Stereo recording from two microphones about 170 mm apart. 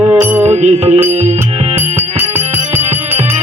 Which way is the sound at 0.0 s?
15° right (ahead or behind).